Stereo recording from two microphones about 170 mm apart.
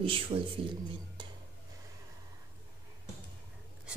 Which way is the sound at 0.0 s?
30° right (ahead or behind).